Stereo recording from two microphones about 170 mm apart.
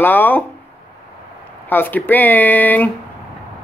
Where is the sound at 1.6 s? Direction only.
10° left (ahead or behind).